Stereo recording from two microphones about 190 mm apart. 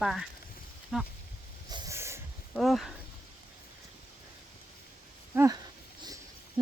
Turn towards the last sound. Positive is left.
turn(degrees=-15)  # may be behind; listen again after turning